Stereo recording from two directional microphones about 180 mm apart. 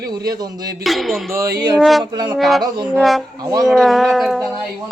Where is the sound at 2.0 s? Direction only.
25° right (ahead or behind).